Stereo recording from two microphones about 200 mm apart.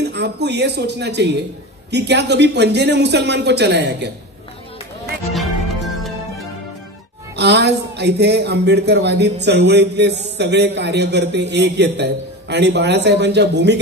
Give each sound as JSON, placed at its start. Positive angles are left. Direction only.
{"t": 0.0, "sound": "a man's voice", "side_deg": -55}
{"t": 7.3, "sound": "a man's voice", "side_deg": -55}